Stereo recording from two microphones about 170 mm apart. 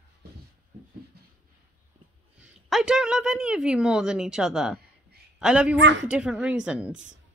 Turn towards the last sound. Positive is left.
turn(degrees=-5)  # may be behind; listen again after turning